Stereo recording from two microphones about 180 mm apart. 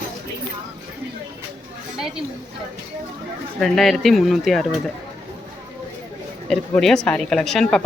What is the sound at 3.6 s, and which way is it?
Speech, centre (ahead or behind).